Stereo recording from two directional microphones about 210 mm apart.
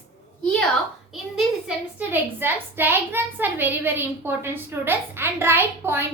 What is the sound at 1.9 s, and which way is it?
A woman's voice, 10° right (ahead or behind).